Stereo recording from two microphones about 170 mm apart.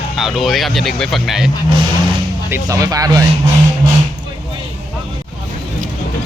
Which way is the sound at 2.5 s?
20° right (ahead or behind).